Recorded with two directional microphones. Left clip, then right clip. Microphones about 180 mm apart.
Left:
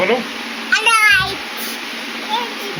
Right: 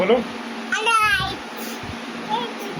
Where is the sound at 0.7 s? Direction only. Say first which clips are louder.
Left 6 dB; 20° right (ahead or behind).